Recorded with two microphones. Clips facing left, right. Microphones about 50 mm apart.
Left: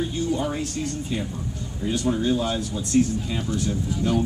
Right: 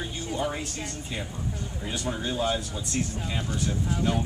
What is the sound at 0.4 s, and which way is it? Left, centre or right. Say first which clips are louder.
Speech: left 4 dB; centre.